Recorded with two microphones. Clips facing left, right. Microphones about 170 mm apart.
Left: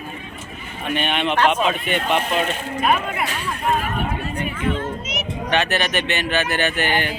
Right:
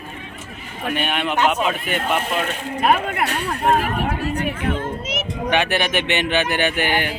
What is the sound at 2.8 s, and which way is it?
Speech, 65° right (ahead or behind).